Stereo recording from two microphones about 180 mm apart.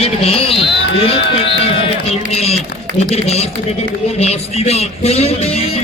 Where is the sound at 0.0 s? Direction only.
35° left (ahead or behind).